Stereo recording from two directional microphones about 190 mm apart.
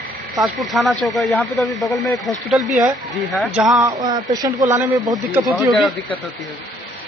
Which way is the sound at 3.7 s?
20° right (ahead or behind).